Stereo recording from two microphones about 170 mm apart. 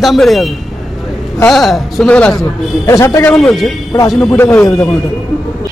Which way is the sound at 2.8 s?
15° left (ahead or behind).